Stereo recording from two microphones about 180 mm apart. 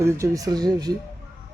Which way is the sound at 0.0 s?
20° right (ahead or behind).